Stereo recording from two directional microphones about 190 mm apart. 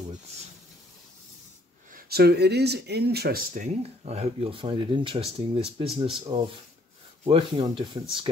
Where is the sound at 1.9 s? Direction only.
50° right (ahead or behind).